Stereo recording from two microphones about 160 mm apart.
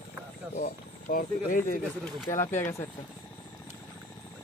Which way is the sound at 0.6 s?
60° left (ahead or behind).